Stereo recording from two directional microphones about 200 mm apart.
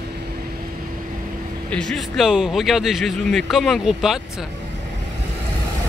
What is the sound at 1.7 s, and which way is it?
Speech, 5° left (ahead or behind).